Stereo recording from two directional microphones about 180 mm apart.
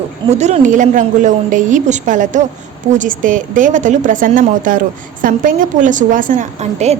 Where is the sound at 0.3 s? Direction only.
40° right (ahead or behind).